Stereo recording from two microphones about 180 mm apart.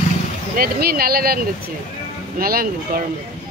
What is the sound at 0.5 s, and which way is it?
Speech, 55° right (ahead or behind).